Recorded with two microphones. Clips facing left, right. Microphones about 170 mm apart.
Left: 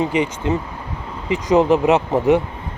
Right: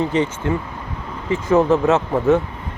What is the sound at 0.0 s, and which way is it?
Speech, 15° left (ahead or behind).